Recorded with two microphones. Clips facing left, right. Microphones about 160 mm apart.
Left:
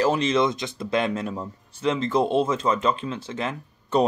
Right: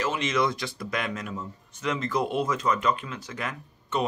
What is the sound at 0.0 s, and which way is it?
Speech, 35° left (ahead or behind).